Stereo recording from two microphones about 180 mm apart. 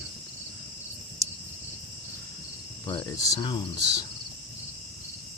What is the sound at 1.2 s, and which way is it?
Cricket, 20° right (ahead or behind).